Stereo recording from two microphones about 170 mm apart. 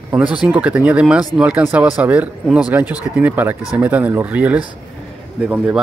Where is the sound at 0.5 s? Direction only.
10° right (ahead or behind).